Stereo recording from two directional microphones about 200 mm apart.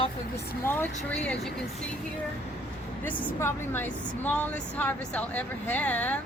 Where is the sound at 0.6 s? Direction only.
10° left (ahead or behind).